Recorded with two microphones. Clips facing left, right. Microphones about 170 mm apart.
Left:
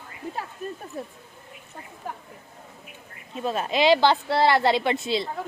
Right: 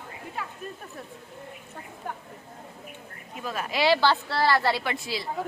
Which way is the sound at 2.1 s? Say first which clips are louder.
Left 1 dB; 5° left (ahead or behind).